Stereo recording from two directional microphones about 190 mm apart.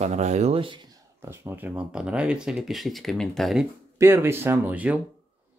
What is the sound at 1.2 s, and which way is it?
Speech, 15° right (ahead or behind).